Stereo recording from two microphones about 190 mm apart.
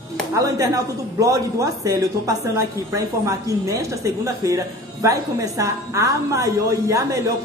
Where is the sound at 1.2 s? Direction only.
15° right (ahead or behind).